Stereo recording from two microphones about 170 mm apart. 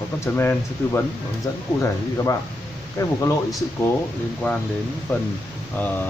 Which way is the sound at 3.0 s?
15° left (ahead or behind).